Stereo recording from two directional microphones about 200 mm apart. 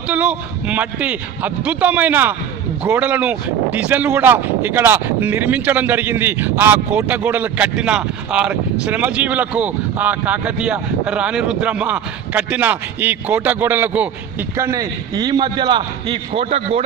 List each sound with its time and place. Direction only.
0.1 s a man's voice: 5° right (ahead or behind); by 16.8 s 30° right (ahead or behind)